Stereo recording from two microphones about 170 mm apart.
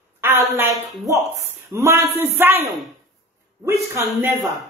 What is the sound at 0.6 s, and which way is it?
A woman's voice, 20° right (ahead or behind).